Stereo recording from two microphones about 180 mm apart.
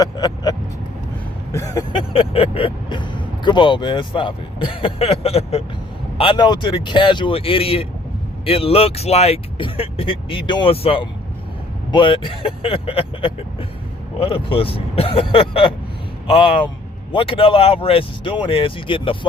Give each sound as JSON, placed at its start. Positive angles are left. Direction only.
{"t": 0.0, "sound": "speech", "side_deg": 20}
{"t": 1.5, "sound": "vehicle", "side_deg": 20}
{"t": 2.1, "sound": "speech", "side_deg": 30}